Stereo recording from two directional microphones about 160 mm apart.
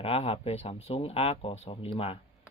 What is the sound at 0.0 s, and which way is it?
Speech, 35° left (ahead or behind).